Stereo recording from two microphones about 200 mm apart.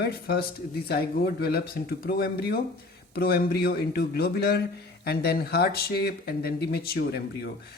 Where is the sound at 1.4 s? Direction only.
50° left (ahead or behind).